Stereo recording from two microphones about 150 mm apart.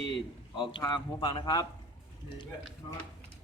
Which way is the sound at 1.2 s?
25° left (ahead or behind).